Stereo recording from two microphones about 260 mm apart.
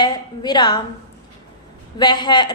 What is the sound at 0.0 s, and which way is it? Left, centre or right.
Speech, centre.